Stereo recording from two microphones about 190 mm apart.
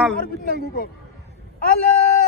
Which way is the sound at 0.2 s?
45° left (ahead or behind).